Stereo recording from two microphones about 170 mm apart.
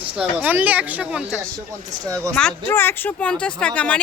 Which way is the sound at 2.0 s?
20° right (ahead or behind).